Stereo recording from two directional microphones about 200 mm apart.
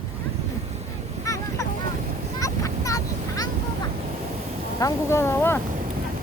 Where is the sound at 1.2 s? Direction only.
15° left (ahead or behind).